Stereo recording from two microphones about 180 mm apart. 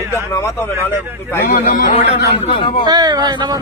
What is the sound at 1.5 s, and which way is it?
Speech, 50° left (ahead or behind).